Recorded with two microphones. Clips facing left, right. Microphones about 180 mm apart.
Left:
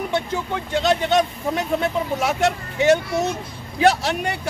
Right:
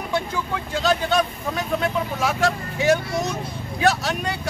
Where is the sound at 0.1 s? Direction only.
20° left (ahead or behind).